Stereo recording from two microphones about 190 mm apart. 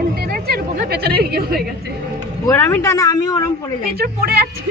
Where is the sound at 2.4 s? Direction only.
15° left (ahead or behind).